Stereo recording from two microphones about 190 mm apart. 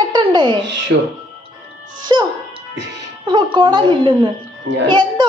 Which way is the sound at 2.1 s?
20° right (ahead or behind).